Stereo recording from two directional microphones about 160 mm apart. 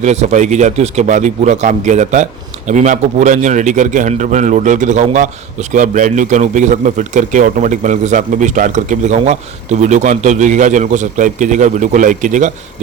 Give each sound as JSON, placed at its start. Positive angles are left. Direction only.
{"t": 0.0, "sound": "a man's voice", "side_deg": -45}